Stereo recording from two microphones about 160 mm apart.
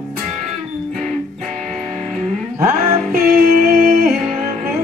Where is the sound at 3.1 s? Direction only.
65° right (ahead or behind).